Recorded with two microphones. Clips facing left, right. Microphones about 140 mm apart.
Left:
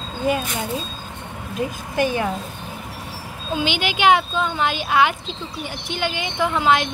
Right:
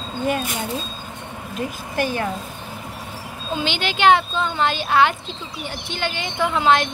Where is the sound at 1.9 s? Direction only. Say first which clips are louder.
Left 2 dB; 15° left (ahead or behind).